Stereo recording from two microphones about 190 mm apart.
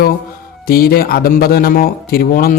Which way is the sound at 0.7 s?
50° left (ahead or behind).